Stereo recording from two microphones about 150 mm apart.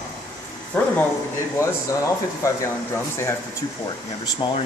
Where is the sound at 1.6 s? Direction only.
20° left (ahead or behind).